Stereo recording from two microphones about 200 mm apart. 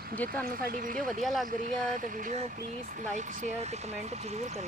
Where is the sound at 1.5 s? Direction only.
40° right (ahead or behind).